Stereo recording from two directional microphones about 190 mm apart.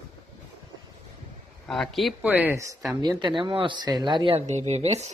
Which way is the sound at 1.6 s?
Centre (ahead or behind).